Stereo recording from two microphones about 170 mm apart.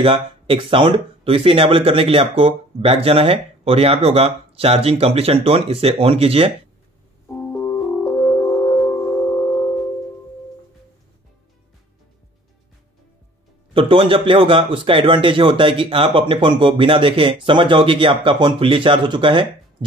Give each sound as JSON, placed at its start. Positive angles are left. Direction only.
{"t": 0.0, "sound": "speech", "side_deg": -30}
{"t": 7.2, "sound": "music", "side_deg": 15}
{"t": 13.7, "sound": "speech", "side_deg": -30}